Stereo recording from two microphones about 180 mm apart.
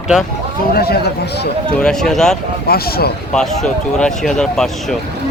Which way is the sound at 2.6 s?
55° left (ahead or behind).